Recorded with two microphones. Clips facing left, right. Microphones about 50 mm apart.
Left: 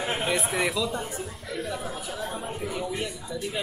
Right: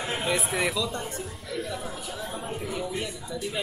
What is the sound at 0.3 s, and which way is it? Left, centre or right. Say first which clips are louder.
Speech: right 1 dB; centre.